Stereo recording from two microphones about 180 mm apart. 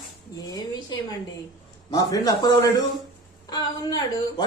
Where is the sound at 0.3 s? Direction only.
20° left (ahead or behind).